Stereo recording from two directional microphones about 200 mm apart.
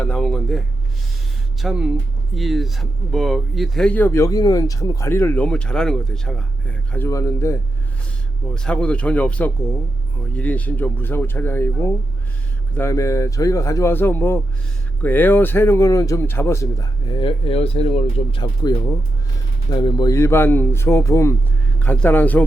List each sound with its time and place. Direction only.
0.0 s speech: 5° left (ahead or behind)
1.6 s speech: 5° right (ahead or behind); by 18.7 s 25° left (ahead or behind)
19.7 s speech: 20° left (ahead or behind)